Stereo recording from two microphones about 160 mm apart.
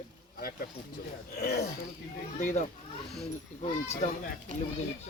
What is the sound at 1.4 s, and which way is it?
Speech, 70° left (ahead or behind).